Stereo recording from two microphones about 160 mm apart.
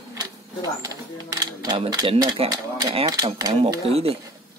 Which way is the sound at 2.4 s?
40° right (ahead or behind).